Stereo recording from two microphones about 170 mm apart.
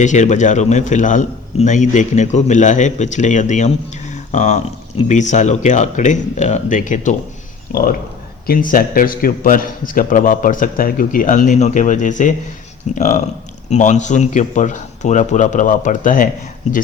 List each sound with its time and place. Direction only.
0.0 s a man's voice: 45° left (ahead or behind)